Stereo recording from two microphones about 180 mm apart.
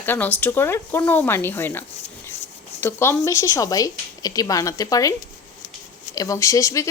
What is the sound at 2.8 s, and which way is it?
A woman's voice, 15° left (ahead or behind).